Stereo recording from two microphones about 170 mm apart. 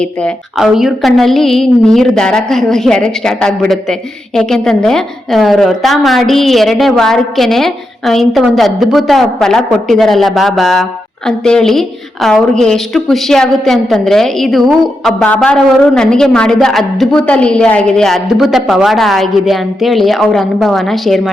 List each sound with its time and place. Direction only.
0.0 s a woman's voice: 5° left (ahead or behind)